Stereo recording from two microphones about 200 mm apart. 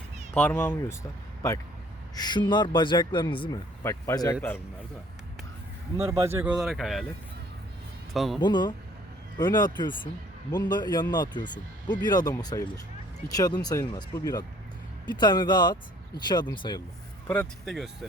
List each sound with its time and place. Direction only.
0.3 s speech: 10° left (ahead or behind)
2.1 s speech: 20° left (ahead or behind)
6.0 s speech: 15° right (ahead or behind)
8.1 s speech: centre (ahead or behind)
8.4 s speech: 20° left (ahead or behind)
17.7 s speech: centre (ahead or behind)